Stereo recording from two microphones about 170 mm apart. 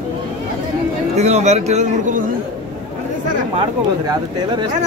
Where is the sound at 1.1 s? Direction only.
40° right (ahead or behind).